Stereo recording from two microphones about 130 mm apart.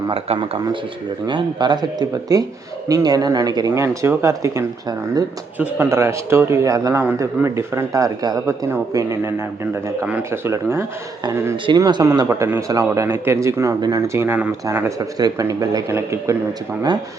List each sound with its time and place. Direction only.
0.1 s a man's voice: 45° right (ahead or behind)
1.3 s a man's voice: 35° right (ahead or behind)
5.5 s a man's voice: 15° right (ahead or behind)